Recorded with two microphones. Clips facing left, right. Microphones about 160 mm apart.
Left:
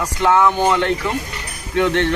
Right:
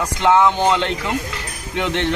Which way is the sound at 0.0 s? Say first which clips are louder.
Even; 20° right (ahead or behind).